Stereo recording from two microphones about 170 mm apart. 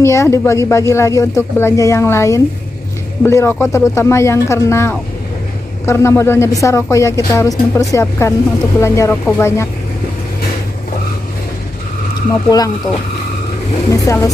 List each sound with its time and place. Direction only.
0.0 s speech: 15° left (ahead or behind)
12.4 s speech: 20° left (ahead or behind)
13.8 s speech: 20° left (ahead or behind)